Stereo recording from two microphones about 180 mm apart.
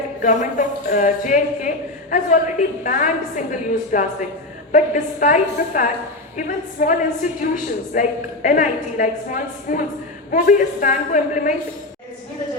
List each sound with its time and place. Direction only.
0.2 s a woman's voice: 45° left (ahead or behind)